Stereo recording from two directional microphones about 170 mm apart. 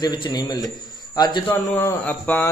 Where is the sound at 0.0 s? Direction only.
25° left (ahead or behind).